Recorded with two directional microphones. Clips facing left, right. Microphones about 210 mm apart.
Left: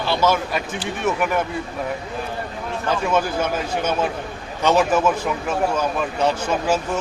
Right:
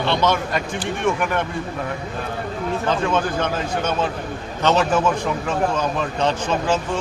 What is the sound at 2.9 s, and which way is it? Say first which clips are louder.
A man's voice: left 2 dB; 10° left (ahead or behind).